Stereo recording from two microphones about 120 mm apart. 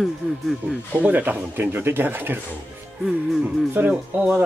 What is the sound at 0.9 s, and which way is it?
Speech, 15° right (ahead or behind).